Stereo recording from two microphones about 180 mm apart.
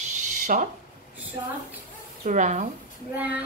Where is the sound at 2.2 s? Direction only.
45° right (ahead or behind).